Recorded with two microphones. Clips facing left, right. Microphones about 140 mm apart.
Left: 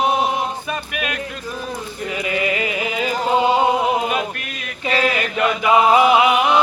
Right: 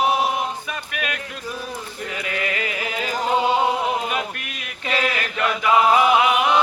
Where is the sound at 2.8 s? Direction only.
10° left (ahead or behind).